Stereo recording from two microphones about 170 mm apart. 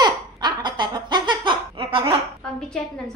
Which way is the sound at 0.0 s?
25° right (ahead or behind).